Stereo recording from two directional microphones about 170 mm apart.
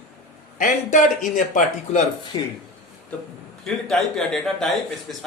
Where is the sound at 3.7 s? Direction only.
Centre (ahead or behind).